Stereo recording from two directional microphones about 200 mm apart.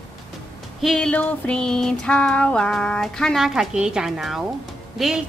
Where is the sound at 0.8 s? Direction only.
5° left (ahead or behind).